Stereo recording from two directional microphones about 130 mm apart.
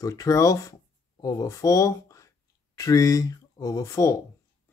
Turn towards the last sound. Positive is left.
turn(degrees=25)  # may be behind; listen again after turning